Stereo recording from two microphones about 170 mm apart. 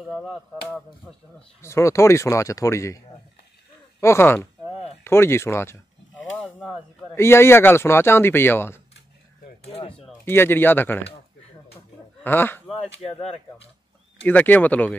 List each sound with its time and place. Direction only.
0.1 s finger snapping: centre (ahead or behind)
1.6 s speech: 15° left (ahead or behind)
4.0 s speech: 15° left (ahead or behind)
5.0 s a sound: 15° left (ahead or behind)
7.2 s speech: 15° left (ahead or behind)
9.6 s speech: 35° left (ahead or behind)
10.2 s speech: 15° left (ahead or behind)
12.2 s speech: 10° left (ahead or behind)
13.0 s speech: 35° left (ahead or behind)
14.2 s speech: 10° left (ahead or behind)